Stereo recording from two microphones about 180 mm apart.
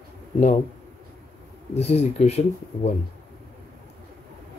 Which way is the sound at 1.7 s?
35° left (ahead or behind).